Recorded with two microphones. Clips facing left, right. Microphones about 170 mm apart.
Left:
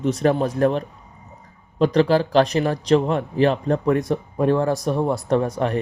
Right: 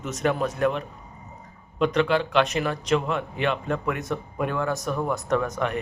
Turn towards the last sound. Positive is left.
turn(degrees=35)  # may be behind; listen again after turning